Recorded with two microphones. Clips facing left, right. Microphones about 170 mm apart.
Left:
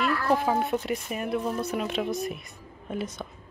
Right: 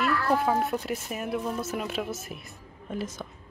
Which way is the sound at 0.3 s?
Centre (ahead or behind).